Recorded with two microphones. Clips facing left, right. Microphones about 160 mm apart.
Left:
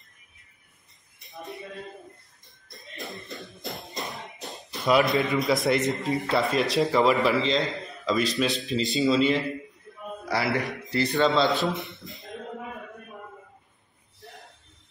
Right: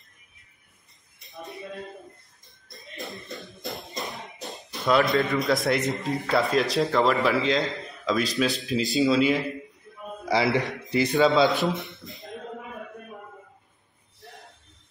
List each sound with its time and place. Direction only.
1.2 s a sound: centre (ahead or behind)
2.8 s music: centre (ahead or behind)
3.6 s tambourine: centre (ahead or behind)
4.0 s music: centre (ahead or behind)
5.0 s a man's voice: centre (ahead or behind)
10.2 s a man's voice: 20° right (ahead or behind)
11.1 s a man's voice: 5° right (ahead or behind)
14.2 s a sound: centre (ahead or behind)